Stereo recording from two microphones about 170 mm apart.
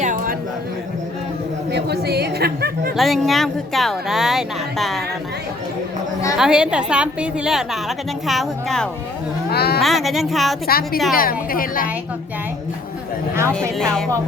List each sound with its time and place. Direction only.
0.0 s a sound: 50° right (ahead or behind)
1.7 s a woman's voice: 70° right (ahead or behind)
2.9 s a woman's voice: centre (ahead or behind)
6.3 s a woman's voice: 5° right (ahead or behind)
9.5 s speech: 70° left (ahead or behind)
9.8 s a woman's voice: centre (ahead or behind)
10.7 s a woman's voice: 60° left (ahead or behind)